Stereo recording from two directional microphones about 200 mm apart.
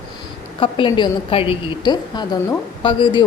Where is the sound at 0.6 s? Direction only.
25° left (ahead or behind).